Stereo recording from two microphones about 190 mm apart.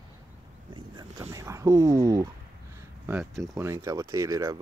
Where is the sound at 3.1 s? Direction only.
5° right (ahead or behind).